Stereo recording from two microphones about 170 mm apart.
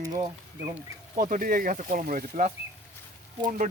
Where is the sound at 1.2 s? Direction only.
55° right (ahead or behind).